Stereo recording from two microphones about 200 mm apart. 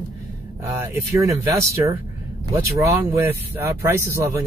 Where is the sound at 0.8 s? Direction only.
15° right (ahead or behind).